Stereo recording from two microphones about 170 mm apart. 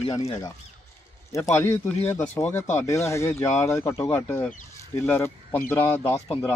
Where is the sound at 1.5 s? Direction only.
15° left (ahead or behind).